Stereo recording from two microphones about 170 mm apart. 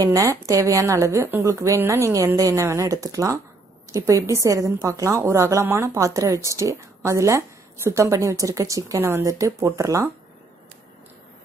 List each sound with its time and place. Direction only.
0.0 s a woman's voice: 20° right (ahead or behind)